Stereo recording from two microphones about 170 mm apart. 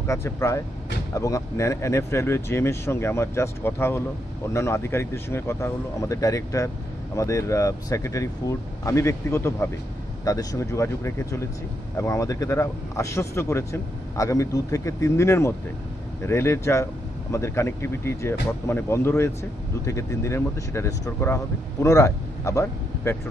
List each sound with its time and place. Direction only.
0.0 s speech: 15° left (ahead or behind)